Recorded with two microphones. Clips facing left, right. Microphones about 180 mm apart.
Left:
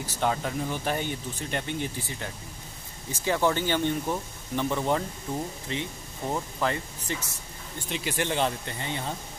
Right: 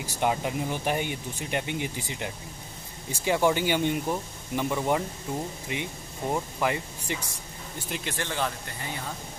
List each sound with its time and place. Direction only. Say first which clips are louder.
0.0 s speech: right 1 dB; 15° right (ahead or behind)
8.0 s speech: left 4 dB; 15° left (ahead or behind)